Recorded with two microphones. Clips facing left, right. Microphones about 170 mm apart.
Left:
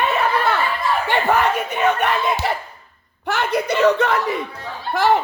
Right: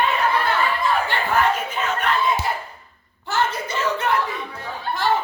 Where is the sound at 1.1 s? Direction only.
70° left (ahead or behind).